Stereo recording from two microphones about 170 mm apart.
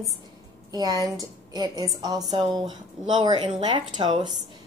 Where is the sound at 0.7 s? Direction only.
25° right (ahead or behind).